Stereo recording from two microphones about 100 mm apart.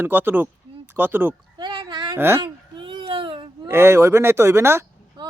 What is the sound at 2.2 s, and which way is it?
Speech, 25° right (ahead or behind).